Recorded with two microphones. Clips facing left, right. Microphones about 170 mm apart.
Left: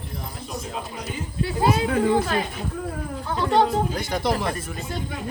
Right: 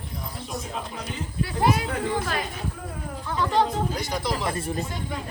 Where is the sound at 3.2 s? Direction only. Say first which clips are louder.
Left 3 dB; 30° left (ahead or behind).